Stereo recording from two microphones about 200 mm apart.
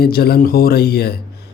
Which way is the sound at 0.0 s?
50° left (ahead or behind).